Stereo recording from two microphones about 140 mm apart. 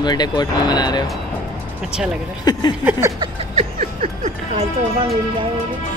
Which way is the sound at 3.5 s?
55° right (ahead or behind).